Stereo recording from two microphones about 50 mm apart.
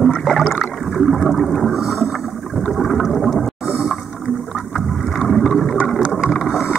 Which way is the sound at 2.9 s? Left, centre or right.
Centre.